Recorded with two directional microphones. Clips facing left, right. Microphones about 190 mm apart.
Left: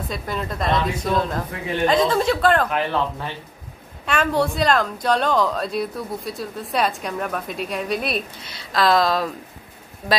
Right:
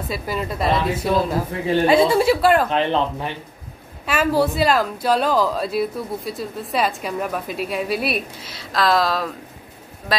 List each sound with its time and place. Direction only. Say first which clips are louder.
0.1 s speech: right 4 dB; 5° right (ahead or behind)
2.7 s speech: right 3 dB; 20° right (ahead or behind)
4.0 s speech: right 2 dB; 5° right (ahead or behind)